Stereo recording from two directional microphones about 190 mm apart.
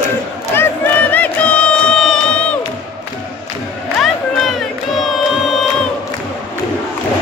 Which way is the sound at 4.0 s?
Centre (ahead or behind).